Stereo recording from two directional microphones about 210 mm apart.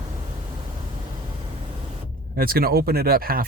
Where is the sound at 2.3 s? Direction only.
45° right (ahead or behind).